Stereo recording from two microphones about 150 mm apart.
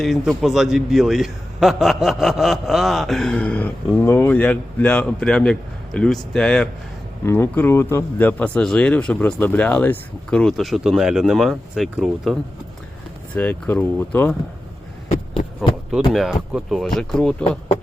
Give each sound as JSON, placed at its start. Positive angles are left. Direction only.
{"t": 0.0, "sound": "a man's voice", "side_deg": 0}
{"t": 7.3, "sound": "speech", "side_deg": 15}
{"t": 13.3, "sound": "speech", "side_deg": 10}
{"t": 15.1, "sound": "heart sounds", "side_deg": 35}
{"t": 16.1, "sound": "a man's voice", "side_deg": -5}